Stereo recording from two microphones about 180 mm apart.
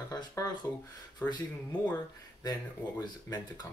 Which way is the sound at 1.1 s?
10° left (ahead or behind).